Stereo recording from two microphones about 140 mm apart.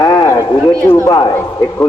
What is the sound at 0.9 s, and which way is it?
Speech, 25° left (ahead or behind).